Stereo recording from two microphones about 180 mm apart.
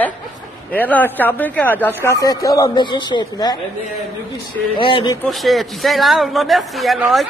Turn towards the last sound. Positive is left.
turn(degrees=0)  # may be behind; listen again after turning